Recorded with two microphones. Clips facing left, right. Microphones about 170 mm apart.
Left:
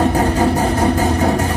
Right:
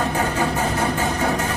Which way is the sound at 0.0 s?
35° left (ahead or behind).